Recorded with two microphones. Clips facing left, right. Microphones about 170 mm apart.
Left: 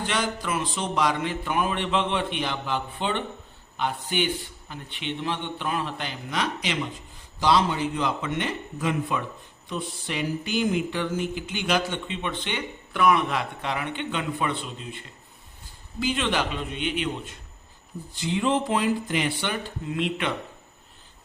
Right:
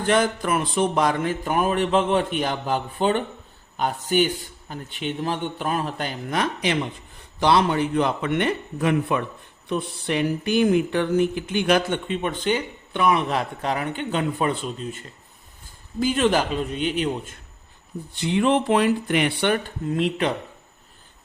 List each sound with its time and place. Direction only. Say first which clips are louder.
0.0 s a man's voice: right 7 dB; 50° right (ahead or behind)
12.9 s a man's voice: right 1 dB; 25° right (ahead or behind)
18.1 s a man's voice: right 4 dB; 65° right (ahead or behind)
20.0 s a man's voice: right 4 dB; 35° right (ahead or behind)